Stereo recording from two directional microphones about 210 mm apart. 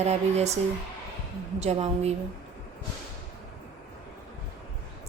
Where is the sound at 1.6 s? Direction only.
30° right (ahead or behind).